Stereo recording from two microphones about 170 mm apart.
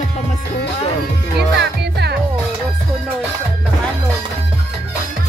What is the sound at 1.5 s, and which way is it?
Music, 80° right.